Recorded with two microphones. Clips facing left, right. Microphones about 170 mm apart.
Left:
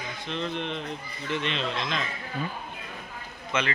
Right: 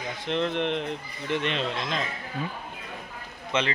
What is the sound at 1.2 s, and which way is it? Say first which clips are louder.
Speech: right 2 dB; 55° right (ahead or behind).